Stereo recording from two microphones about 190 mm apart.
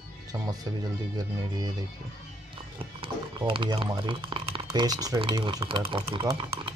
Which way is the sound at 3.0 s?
25° right (ahead or behind).